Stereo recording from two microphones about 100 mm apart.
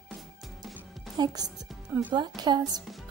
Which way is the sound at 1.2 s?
45° right (ahead or behind).